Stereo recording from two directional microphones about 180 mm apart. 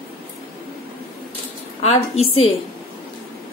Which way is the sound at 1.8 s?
35° left (ahead or behind).